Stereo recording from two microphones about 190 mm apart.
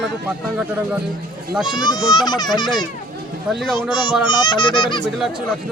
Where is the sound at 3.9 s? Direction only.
25° left (ahead or behind).